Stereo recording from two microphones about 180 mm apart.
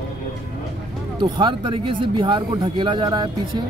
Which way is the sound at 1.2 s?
25° right (ahead or behind).